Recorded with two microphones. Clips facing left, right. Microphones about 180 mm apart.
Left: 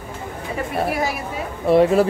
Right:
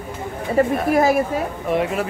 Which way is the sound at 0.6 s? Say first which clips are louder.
Right 12 dB; 40° right (ahead or behind).